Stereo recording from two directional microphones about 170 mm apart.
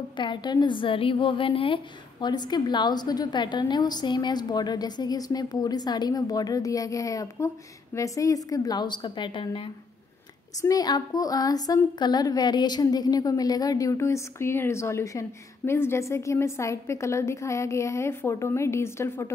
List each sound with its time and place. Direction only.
0.2 s a woman's voice: 25° left (ahead or behind)
10.6 s a woman's voice: 20° left (ahead or behind)